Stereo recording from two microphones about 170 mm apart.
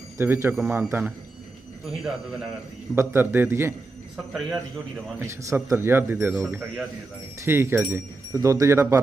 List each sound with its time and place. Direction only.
0.2 s speech: 15° right (ahead or behind)
0.5 s a man's voice: 5° right (ahead or behind)
2.9 s speech: 15° right (ahead or behind)
4.3 s a man's voice: centre (ahead or behind)
5.2 s speech: 15° right (ahead or behind)